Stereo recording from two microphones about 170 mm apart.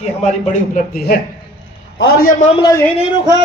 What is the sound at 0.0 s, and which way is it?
A man's voice, 40° left (ahead or behind).